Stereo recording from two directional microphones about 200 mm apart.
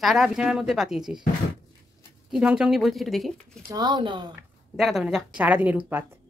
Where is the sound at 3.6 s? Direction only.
20° right (ahead or behind).